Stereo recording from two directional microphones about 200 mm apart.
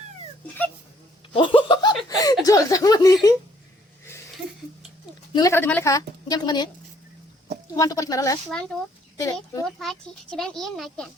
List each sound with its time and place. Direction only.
1.3 s a sound: 25° left (ahead or behind)
2.0 s chuckle: 20° left (ahead or behind)
5.3 s a woman's voice: 15° left (ahead or behind)
7.8 s a woman's voice: 15° left (ahead or behind)
9.6 s speech: centre (ahead or behind)